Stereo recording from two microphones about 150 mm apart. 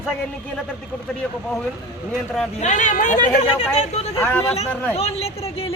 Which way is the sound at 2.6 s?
55° left (ahead or behind).